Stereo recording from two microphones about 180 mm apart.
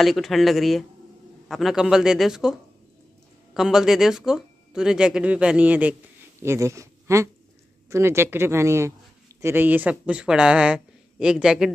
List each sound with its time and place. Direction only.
0.0 s speech: centre (ahead or behind)
3.5 s speech: 5° right (ahead or behind)